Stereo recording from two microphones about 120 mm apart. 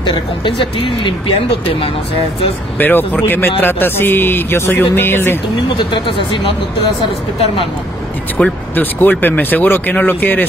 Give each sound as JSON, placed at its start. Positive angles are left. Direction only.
{"t": 0.0, "sound": "speech", "side_deg": 45}
{"t": 2.8, "sound": "speech", "side_deg": 15}
{"t": 5.8, "sound": "speech", "side_deg": 45}
{"t": 8.4, "sound": "speech", "side_deg": 15}